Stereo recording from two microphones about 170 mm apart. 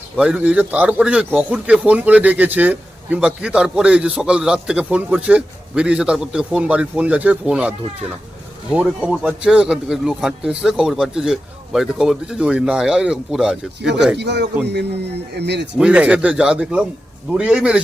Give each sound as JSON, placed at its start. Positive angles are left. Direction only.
{"t": 0.2, "sound": "a man's voice", "side_deg": -5}
{"t": 8.7, "sound": "a man's voice", "side_deg": -5}
{"t": 14.2, "sound": "speech", "side_deg": -85}
{"t": 15.8, "sound": "a man's voice", "side_deg": -5}